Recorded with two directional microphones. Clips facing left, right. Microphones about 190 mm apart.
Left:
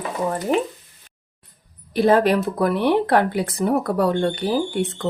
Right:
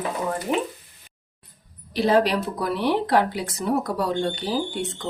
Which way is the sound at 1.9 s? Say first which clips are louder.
Left 4 dB; 50° left (ahead or behind).